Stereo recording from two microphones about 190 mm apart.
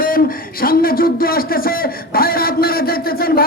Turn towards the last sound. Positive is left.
turn(degrees=50)  # may be behind; listen again after turning